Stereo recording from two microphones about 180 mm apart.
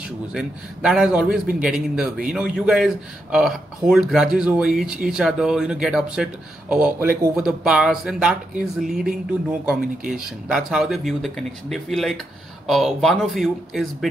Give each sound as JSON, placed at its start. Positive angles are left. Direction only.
{"t": 0.3, "sound": "a man's voice", "side_deg": -5}